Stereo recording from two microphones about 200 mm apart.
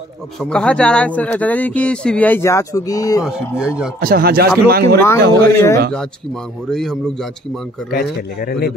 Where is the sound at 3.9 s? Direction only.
50° right (ahead or behind).